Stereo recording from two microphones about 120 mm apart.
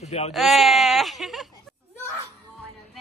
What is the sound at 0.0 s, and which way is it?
Speech, 65° left (ahead or behind).